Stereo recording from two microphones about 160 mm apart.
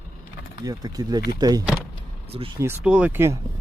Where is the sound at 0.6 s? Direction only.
25° right (ahead or behind).